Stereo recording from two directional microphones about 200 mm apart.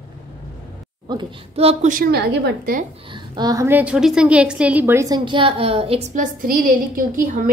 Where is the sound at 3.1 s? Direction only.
20° right (ahead or behind).